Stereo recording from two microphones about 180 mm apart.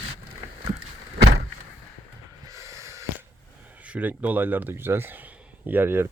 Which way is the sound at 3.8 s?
10° right (ahead or behind).